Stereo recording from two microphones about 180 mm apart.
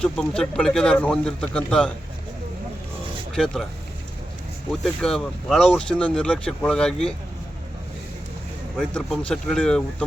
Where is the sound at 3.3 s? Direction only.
Centre (ahead or behind).